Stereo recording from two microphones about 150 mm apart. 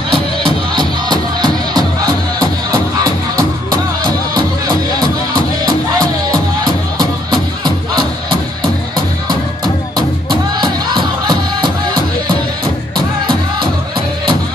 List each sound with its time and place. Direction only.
0.7 s music: 30° right (ahead or behind)
5.9 s music: 25° right (ahead or behind)
10.6 s music: 30° right (ahead or behind)